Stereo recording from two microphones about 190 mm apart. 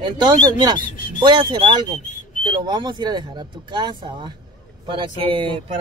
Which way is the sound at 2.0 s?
40° left (ahead or behind).